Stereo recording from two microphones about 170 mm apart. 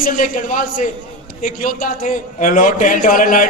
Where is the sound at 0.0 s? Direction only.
50° left (ahead or behind).